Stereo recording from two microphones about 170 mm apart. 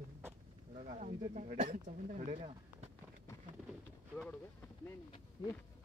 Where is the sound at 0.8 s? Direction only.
45° right (ahead or behind).